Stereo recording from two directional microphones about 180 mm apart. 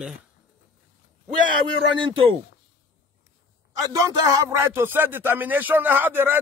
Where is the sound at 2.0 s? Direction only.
30° right (ahead or behind).